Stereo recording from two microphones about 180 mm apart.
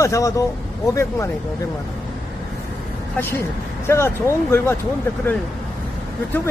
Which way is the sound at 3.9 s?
15° left (ahead or behind).